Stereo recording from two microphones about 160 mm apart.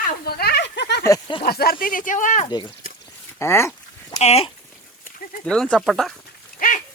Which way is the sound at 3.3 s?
15° left (ahead or behind).